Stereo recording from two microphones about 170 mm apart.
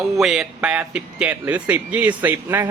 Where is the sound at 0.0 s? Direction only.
Centre (ahead or behind).